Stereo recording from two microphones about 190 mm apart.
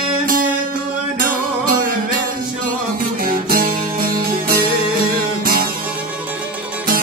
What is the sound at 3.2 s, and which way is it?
Music, 50° right (ahead or behind).